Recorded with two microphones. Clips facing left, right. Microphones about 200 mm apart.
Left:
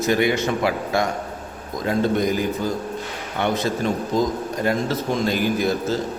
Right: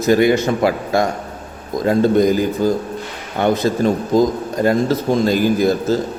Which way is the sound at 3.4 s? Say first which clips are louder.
Right 6 dB; 40° right (ahead or behind).